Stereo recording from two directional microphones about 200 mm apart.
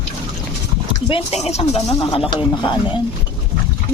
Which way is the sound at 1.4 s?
30° left (ahead or behind).